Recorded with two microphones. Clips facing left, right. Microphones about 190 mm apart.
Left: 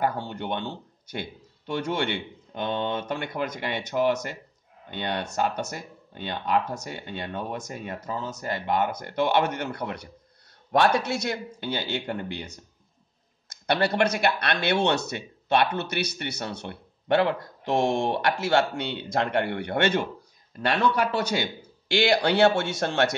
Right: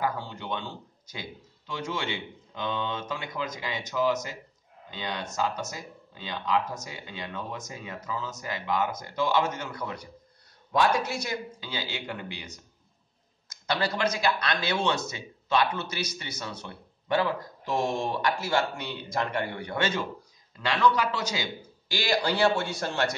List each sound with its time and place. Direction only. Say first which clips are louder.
0.0 s speech: left 4 dB; 65° left (ahead or behind)